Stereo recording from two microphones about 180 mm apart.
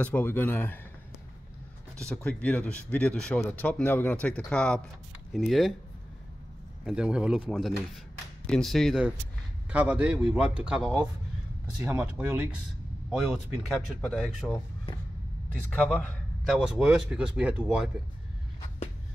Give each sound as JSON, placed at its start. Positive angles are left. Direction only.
{"t": 0.0, "sound": "speech", "side_deg": 10}
{"t": 2.0, "sound": "speech", "side_deg": 5}
{"t": 6.8, "sound": "a man's voice", "side_deg": -5}
{"t": 14.9, "sound": "a sound", "side_deg": 30}
{"t": 15.7, "sound": "speech", "side_deg": 5}
{"t": 16.5, "sound": "speech", "side_deg": -5}